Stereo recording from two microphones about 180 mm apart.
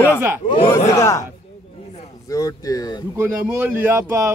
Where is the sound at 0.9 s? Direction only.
15° left (ahead or behind).